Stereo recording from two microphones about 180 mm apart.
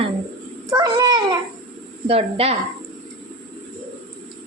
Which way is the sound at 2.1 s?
35° right (ahead or behind).